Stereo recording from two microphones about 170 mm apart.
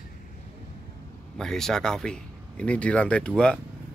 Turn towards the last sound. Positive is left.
turn(degrees=5)  # may be behind; listen again after turning